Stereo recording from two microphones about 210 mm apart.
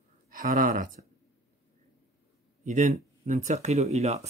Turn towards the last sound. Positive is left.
turn(degrees=-30)  # may be behind; listen again after turning